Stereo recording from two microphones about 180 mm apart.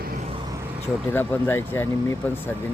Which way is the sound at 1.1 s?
10° left (ahead or behind).